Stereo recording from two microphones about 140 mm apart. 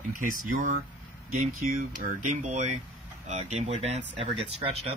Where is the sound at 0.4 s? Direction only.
70° right (ahead or behind).